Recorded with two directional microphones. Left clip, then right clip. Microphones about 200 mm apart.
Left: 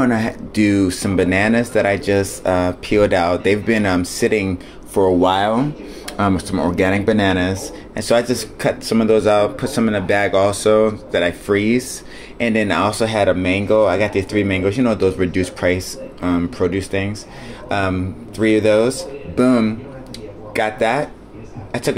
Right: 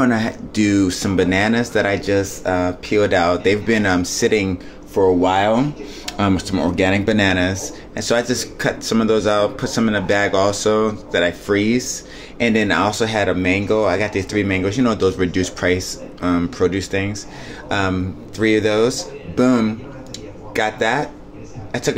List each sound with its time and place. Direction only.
0.0 s speech: 5° left (ahead or behind)
4.9 s speech: 20° left (ahead or behind)
5.3 s speech: 5° left (ahead or behind)